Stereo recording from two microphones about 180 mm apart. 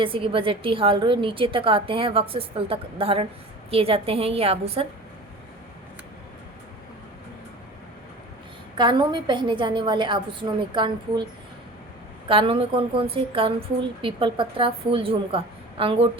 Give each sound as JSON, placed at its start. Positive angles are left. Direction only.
{"t": 0.0, "sound": "a woman's voice", "side_deg": -30}
{"t": 8.8, "sound": "a woman's voice", "side_deg": -25}
{"t": 12.3, "sound": "a woman's voice", "side_deg": -30}